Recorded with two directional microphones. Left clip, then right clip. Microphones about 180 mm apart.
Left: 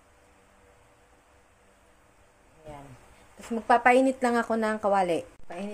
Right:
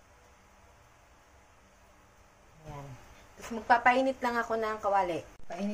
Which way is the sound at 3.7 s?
55° left (ahead or behind).